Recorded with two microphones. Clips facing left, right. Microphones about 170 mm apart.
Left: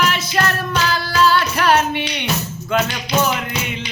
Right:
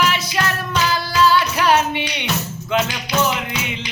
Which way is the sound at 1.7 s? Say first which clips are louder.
Left 2 dB; 15° right (ahead or behind).